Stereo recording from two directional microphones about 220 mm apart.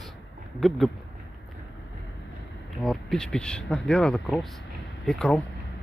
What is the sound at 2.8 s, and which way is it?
Speech, centre (ahead or behind).